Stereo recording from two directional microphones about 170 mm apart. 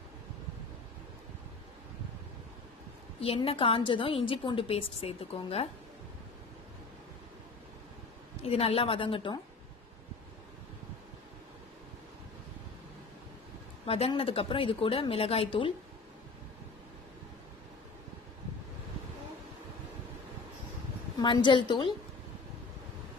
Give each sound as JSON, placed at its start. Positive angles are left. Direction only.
{"t": 3.2, "sound": "a woman's voice", "side_deg": 35}
{"t": 8.5, "sound": "a woman's voice", "side_deg": 35}
{"t": 13.8, "sound": "a woman's voice", "side_deg": 35}
{"t": 21.2, "sound": "a woman's voice", "side_deg": 25}